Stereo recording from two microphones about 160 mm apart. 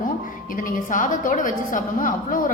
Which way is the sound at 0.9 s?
55° left (ahead or behind).